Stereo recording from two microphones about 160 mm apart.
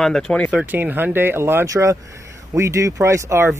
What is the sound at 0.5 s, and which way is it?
Speech, 10° right (ahead or behind).